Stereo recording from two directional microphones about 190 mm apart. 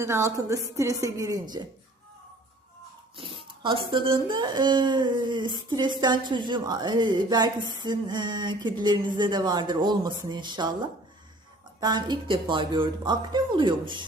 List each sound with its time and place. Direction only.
0.0 s a woman's voice: 15° right (ahead or behind)
3.2 s speech: 30° right (ahead or behind)
11.8 s speech: 20° right (ahead or behind)